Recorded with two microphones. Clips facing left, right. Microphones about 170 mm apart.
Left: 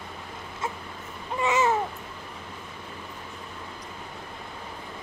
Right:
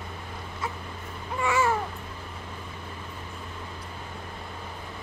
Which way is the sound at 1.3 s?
20° left (ahead or behind).